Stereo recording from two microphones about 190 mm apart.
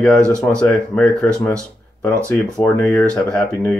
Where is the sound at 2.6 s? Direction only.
5° left (ahead or behind).